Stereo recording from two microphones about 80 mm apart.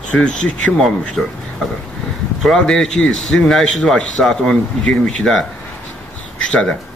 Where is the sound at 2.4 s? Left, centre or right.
Centre.